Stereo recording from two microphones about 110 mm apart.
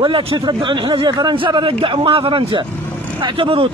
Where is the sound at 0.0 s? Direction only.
50° right (ahead or behind).